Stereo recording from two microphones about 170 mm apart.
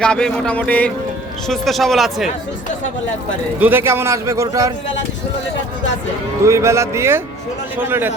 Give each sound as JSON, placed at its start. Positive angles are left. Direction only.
{"t": 0.0, "sound": "speech", "side_deg": 5}
{"t": 3.6, "sound": "a man's voice", "side_deg": -10}
{"t": 6.4, "sound": "a man's voice", "side_deg": -15}